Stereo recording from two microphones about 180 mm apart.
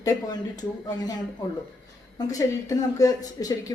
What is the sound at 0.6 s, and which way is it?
Speech, 20° left (ahead or behind).